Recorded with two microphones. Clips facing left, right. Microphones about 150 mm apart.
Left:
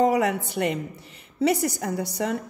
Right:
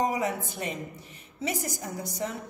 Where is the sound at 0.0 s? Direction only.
70° left (ahead or behind).